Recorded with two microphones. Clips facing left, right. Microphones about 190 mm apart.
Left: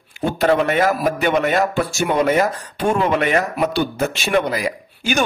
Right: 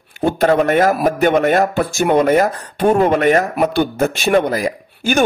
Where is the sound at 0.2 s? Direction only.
45° right (ahead or behind).